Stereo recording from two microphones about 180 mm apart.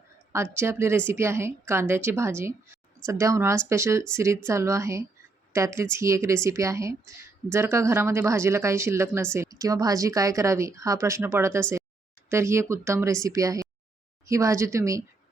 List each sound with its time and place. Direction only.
0.5 s speech: 15° right (ahead or behind)